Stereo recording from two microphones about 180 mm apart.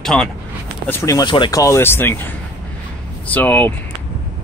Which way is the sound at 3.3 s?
10° left (ahead or behind).